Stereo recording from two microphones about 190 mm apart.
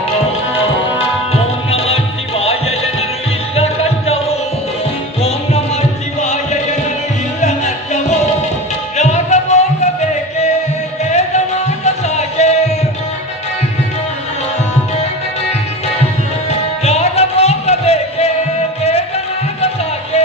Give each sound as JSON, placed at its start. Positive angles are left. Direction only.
{"t": 1.3, "sound": "music", "side_deg": 30}
{"t": 6.1, "sound": "music", "side_deg": 35}
{"t": 11.1, "sound": "music", "side_deg": 35}
{"t": 16.8, "sound": "music", "side_deg": 35}